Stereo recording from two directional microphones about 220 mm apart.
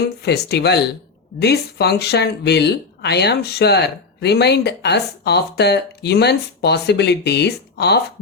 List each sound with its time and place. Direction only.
0.2 s speech: 50° left (ahead or behind)